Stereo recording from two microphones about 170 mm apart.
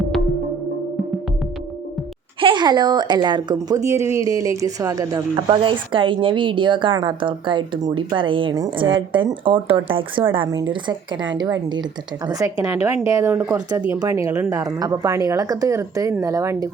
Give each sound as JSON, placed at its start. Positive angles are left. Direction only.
{"t": 2.4, "sound": "a woman's voice", "side_deg": -30}